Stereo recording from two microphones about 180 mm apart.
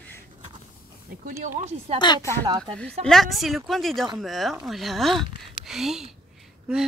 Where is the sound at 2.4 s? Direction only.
25° right (ahead or behind).